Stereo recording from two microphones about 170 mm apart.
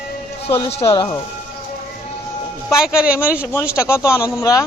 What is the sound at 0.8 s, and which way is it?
Speech, 15° left (ahead or behind).